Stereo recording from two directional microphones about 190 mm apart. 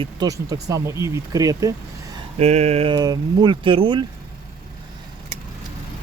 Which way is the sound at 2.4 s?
35° right (ahead or behind).